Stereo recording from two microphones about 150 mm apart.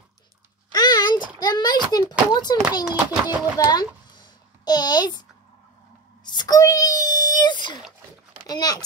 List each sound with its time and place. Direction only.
0.7 s a sound: 25° left (ahead or behind)
1.4 s speech: 25° left (ahead or behind)
2.8 s speech: 10° right (ahead or behind)
3.5 s a sound: 25° left (ahead or behind)
6.2 s wail: 30° left (ahead or behind)
8.5 s speech: 25° left (ahead or behind)